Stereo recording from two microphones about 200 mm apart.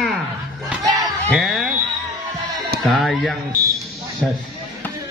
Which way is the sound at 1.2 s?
Centre (ahead or behind).